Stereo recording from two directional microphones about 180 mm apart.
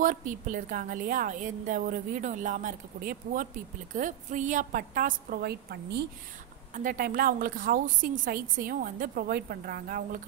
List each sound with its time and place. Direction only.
0.0 s a woman's voice: 50° right (ahead or behind); by 6.0 s 65° right (ahead or behind)
6.7 s a woman's voice: 50° right (ahead or behind)